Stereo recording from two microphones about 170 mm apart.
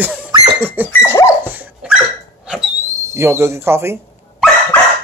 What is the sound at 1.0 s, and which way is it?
Dog, 15° left (ahead or behind).